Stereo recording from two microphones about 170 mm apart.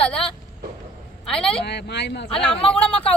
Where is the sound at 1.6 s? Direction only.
80° left.